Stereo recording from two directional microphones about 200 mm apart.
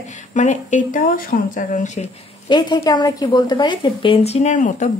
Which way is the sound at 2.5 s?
20° left (ahead or behind).